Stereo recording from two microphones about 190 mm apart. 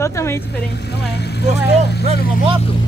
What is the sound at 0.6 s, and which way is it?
Speech, 60° left (ahead or behind).